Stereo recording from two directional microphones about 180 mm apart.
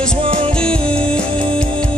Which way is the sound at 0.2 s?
30° right (ahead or behind).